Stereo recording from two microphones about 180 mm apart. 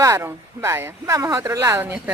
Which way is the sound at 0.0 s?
15° right (ahead or behind).